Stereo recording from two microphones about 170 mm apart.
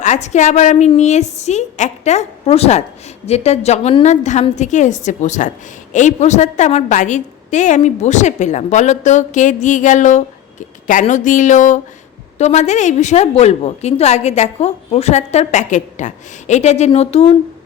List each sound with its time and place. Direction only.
0.0 s a woman's voice: 40° left (ahead or behind)